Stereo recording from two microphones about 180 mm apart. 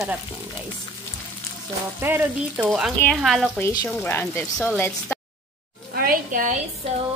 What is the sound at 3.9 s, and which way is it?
Speech, 10° left (ahead or behind).